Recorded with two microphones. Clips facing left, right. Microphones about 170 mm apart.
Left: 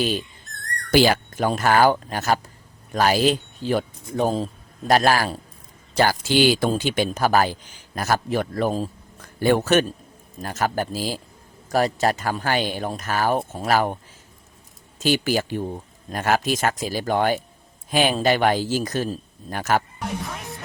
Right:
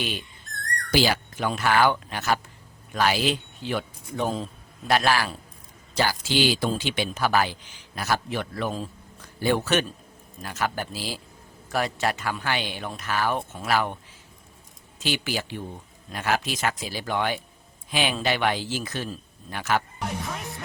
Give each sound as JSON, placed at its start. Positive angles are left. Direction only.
{"t": 0.0, "sound": "speech", "side_deg": 40}
{"t": 0.9, "sound": "a man's voice", "side_deg": 50}
{"t": 9.4, "sound": "a man's voice", "side_deg": 50}